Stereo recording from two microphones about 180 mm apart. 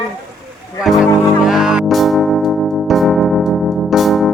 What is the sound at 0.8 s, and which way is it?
Music, centre (ahead or behind).